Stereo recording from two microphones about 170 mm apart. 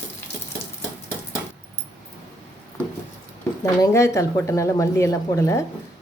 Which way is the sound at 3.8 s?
20° left (ahead or behind).